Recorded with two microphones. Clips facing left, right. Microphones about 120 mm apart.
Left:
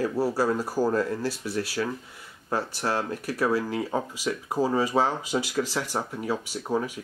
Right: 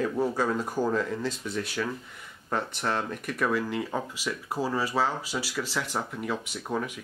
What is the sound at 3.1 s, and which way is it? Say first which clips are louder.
Speech: left 3 dB; 35° left (ahead or behind).